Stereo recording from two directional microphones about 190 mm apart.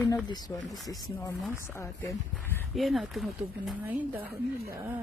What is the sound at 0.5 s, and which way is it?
Speech, centre (ahead or behind).